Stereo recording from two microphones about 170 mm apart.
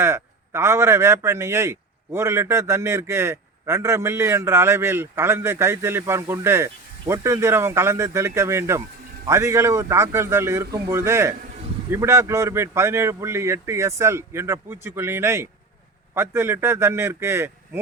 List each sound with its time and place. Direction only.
0.0 s a man's voice: 15° right (ahead or behind)